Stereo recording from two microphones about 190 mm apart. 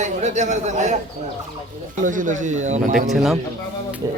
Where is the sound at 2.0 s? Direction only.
45° right (ahead or behind).